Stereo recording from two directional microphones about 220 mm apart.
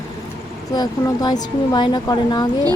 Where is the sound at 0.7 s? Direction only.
20° left (ahead or behind).